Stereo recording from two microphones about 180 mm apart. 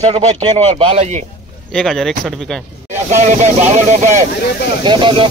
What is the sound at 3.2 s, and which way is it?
Speech, 40° right (ahead or behind).